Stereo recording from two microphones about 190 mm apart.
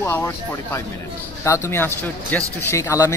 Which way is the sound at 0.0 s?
10° left (ahead or behind).